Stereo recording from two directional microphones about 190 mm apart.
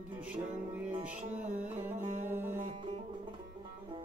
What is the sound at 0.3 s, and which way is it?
Music, 10° right (ahead or behind).